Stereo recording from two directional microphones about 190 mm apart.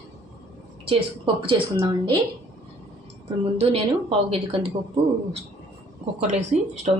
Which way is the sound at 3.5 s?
30° right (ahead or behind).